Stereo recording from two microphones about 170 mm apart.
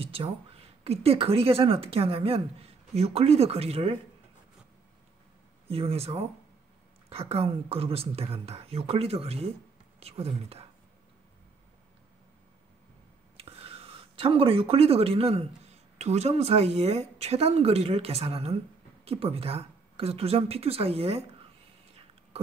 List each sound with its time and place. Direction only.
0.0 s a sound: 35° right (ahead or behind)
0.8 s a woman's voice: 35° right (ahead or behind)
5.7 s a woman's voice: 35° right (ahead or behind)
13.4 s a woman's voice: 35° right (ahead or behind)